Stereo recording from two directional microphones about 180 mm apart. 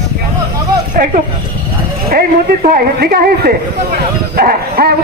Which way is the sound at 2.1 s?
55° right (ahead or behind).